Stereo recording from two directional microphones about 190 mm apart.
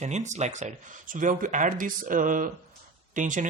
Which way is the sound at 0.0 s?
40° right (ahead or behind).